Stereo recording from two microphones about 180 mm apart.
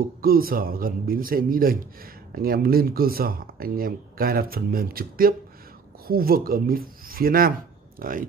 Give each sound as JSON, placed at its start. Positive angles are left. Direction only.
{"t": 0.2, "sound": "a man's voice", "side_deg": -55}